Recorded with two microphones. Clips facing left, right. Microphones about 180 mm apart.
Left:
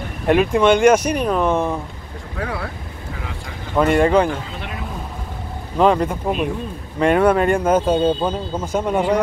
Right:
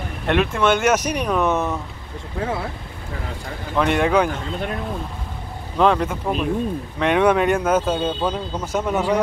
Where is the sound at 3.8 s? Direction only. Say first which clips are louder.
Left 4 dB; centre (ahead or behind).